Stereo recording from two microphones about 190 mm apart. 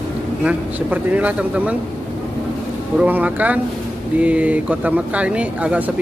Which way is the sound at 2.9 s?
10° right (ahead or behind).